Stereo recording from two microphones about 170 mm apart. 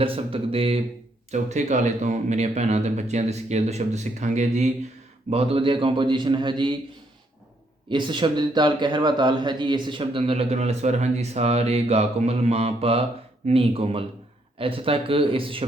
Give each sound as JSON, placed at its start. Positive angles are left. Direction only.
{"t": 0.0, "sound": "a man's voice", "side_deg": -35}
{"t": 7.9, "sound": "a man's voice", "side_deg": -25}